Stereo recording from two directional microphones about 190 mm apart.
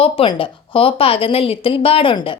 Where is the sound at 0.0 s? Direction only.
30° left (ahead or behind).